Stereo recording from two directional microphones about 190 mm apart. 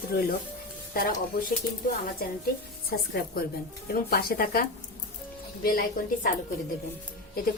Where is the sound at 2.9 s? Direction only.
55° left (ahead or behind).